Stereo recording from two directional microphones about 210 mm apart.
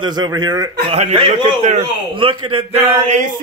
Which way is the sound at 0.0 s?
20° right (ahead or behind).